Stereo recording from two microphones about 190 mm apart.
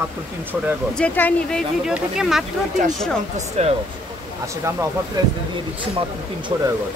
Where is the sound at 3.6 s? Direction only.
35° right (ahead or behind).